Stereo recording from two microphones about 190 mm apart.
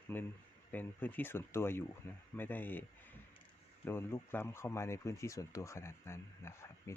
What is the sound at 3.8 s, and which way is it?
Speech, 15° left (ahead or behind).